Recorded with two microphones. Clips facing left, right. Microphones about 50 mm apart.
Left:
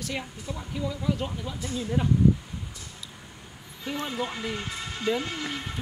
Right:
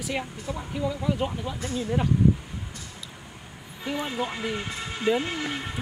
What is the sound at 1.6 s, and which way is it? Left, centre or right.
Speech, right.